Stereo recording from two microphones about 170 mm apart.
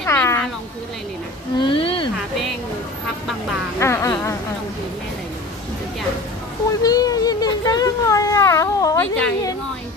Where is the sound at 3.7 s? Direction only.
15° left (ahead or behind).